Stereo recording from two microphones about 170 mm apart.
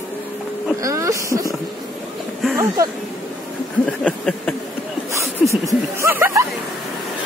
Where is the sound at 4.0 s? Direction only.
5° left (ahead or behind).